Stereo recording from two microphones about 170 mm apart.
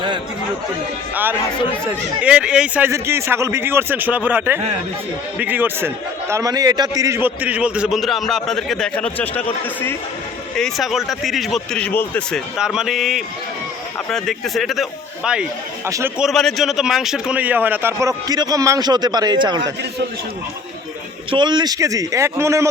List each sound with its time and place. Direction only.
1.1 s a man's voice: 10° right (ahead or behind); by 9.4 s 10° left (ahead or behind)
10.6 s speech: centre (ahead or behind)
12.5 s speech: 5° right (ahead or behind)
15.9 s a man's voice: 20° right (ahead or behind)
16.1 s a man's voice: centre (ahead or behind); by 19.7 s 25° right (ahead or behind)
21.2 s a man's voice: 25° right (ahead or behind)